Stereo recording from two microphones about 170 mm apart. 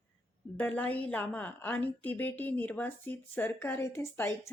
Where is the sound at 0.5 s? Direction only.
10° left (ahead or behind).